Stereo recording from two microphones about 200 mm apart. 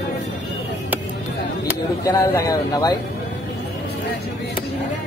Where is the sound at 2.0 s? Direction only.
15° left (ahead or behind).